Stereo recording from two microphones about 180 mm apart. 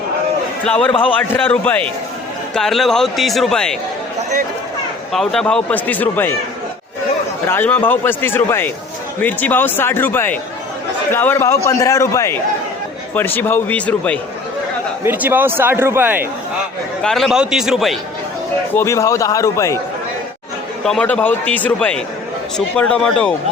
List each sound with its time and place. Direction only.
0.6 s a man's voice: 5° left (ahead or behind)
0.9 s a man's voice: 30° left (ahead or behind)
1.2 s a man's voice: 10° left (ahead or behind)
5.1 s a man's voice: centre (ahead or behind)
7.4 s a man's voice: 10° left (ahead or behind)
15.0 s a man's voice: 10° right (ahead or behind)
17.0 s speech: centre (ahead or behind)
18.7 s a man's voice: 15° left (ahead or behind)
20.8 s a man's voice: 5° left (ahead or behind)